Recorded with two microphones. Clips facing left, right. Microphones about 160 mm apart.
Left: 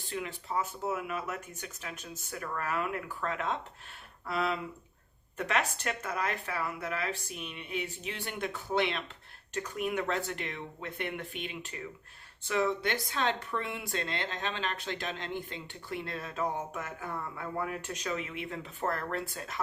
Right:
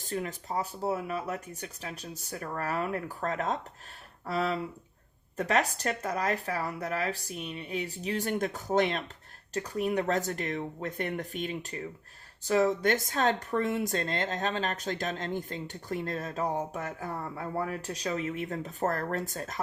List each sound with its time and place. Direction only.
0.0 s speech: 40° right (ahead or behind)